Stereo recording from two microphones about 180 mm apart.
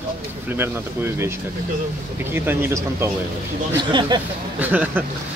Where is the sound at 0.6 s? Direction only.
15° right (ahead or behind).